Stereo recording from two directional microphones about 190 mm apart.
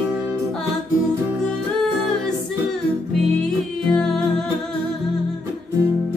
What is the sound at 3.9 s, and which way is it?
Music, 5° left (ahead or behind).